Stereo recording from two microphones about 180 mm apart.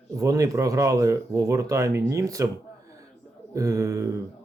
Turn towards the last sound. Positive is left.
turn(degrees=-15)  # may be behind; listen again after turning